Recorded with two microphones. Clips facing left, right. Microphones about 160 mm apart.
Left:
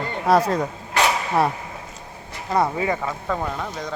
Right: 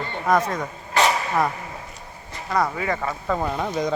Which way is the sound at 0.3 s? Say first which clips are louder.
Left 3 dB; 35° left (ahead or behind).